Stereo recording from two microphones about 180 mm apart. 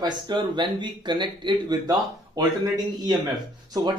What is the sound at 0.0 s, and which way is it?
Speech, 25° right (ahead or behind).